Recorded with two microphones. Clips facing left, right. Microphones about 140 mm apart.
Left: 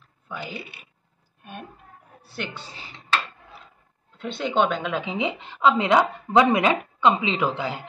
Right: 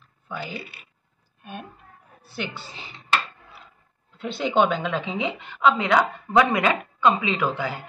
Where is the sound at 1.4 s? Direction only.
Centre (ahead or behind).